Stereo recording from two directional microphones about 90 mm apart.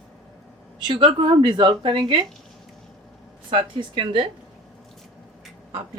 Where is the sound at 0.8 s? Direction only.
65° right (ahead or behind).